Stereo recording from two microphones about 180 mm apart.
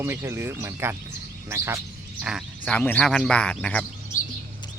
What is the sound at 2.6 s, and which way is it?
Speech, 5° left (ahead or behind).